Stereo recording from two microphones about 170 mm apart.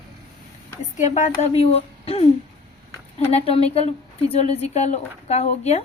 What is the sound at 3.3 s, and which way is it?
A woman's voice, 35° left (ahead or behind).